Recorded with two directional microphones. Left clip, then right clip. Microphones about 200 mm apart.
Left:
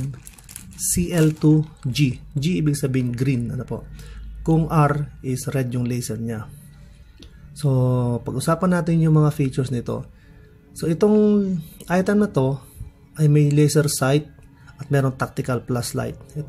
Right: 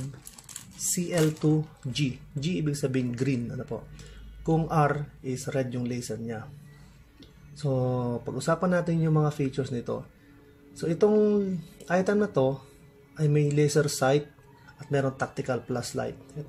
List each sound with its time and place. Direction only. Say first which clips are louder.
0.7 s speech: left 5 dB; 20° left (ahead or behind)
7.5 s speech: left 5 dB; 20° left (ahead or behind)